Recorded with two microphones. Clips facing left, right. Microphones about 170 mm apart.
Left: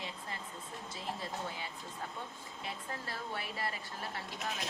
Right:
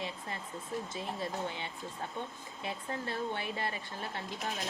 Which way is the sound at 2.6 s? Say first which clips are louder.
Right 5 dB; 25° right (ahead or behind).